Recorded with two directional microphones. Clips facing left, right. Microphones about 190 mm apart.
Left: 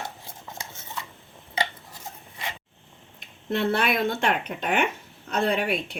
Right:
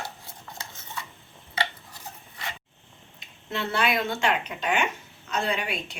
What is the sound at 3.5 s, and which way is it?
A woman's voice, 55° left (ahead or behind).